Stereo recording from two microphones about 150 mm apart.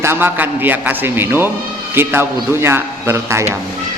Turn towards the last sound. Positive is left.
turn(degrees=-20)  # may be behind; listen again after turning